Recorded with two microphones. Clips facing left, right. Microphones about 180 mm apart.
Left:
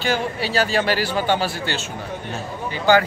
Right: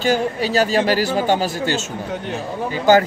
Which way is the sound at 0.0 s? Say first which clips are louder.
Right 4 dB; 40° right (ahead or behind).